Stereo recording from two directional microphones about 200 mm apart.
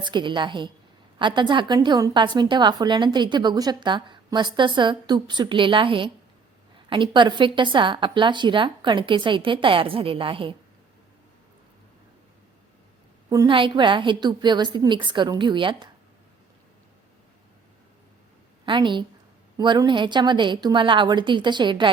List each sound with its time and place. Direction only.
0.0 s a woman's voice: 25° right (ahead or behind)
13.3 s a woman's voice: 20° right (ahead or behind)
18.6 s a woman's voice: 25° right (ahead or behind)